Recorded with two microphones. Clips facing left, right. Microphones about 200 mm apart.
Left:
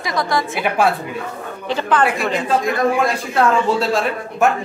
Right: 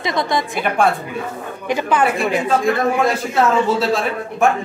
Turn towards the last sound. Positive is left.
turn(degrees=0)  # may be behind; listen again after turning